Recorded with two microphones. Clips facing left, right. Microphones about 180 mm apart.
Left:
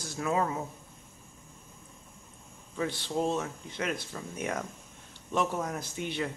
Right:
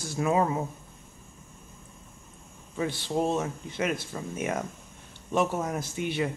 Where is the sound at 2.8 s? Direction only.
15° right (ahead or behind).